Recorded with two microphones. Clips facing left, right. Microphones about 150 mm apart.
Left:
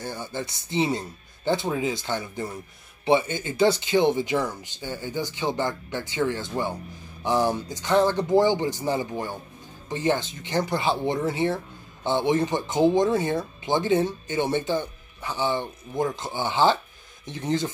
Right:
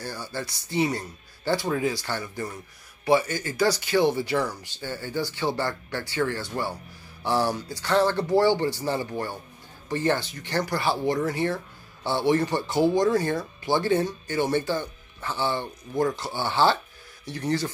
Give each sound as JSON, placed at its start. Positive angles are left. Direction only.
{"t": 0.0, "sound": "speech", "side_deg": 20}